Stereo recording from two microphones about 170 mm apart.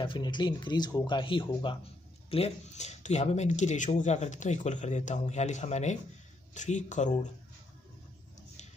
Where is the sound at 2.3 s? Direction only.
40° left (ahead or behind).